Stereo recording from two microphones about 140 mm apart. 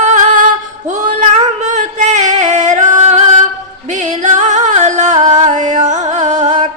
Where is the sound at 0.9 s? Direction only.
60° right (ahead or behind).